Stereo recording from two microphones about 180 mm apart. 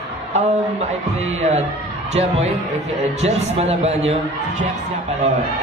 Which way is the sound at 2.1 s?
35° right (ahead or behind).